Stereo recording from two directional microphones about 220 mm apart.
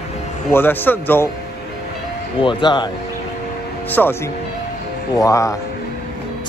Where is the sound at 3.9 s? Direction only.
10° left (ahead or behind).